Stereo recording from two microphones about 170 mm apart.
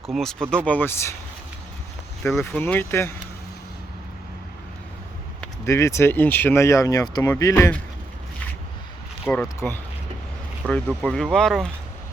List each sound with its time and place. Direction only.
0.1 s speech: centre (ahead or behind)
2.2 s speech: 15° left (ahead or behind)
5.6 s speech: 15° left (ahead or behind)
9.2 s speech: 5° left (ahead or behind)